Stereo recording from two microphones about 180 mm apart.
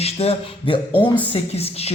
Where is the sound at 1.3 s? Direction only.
35° left (ahead or behind).